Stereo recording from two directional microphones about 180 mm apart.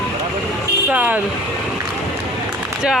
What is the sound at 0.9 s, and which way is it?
Speech, 10° right (ahead or behind).